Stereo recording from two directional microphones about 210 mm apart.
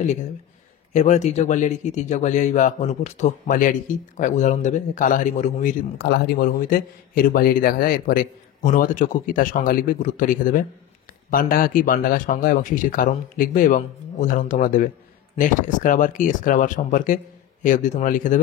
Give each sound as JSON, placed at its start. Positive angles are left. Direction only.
{"t": 0.9, "sound": "speech", "side_deg": 35}